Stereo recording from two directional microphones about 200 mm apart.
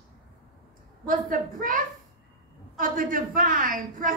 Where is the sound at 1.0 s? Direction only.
45° right (ahead or behind).